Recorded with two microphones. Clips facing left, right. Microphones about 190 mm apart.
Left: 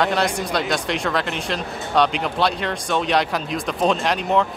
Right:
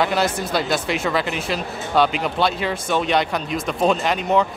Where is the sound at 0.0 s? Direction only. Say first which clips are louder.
Even; 5° right (ahead or behind).